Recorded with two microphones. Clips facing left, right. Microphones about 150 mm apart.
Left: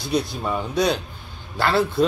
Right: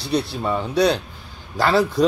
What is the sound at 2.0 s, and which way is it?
Speech, 40° right (ahead or behind).